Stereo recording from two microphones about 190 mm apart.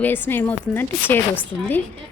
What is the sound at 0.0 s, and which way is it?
Speech, 10° left (ahead or behind).